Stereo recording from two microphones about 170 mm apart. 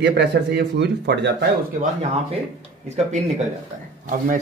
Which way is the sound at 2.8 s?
40° right (ahead or behind).